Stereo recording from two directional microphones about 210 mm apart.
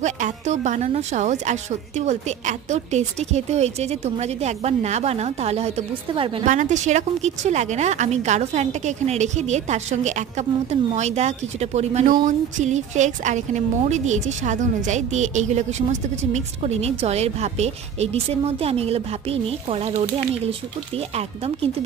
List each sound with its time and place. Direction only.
0.0 s a woman's voice: 35° right (ahead or behind)